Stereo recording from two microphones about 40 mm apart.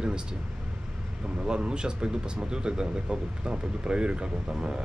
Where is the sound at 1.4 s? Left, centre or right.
Right.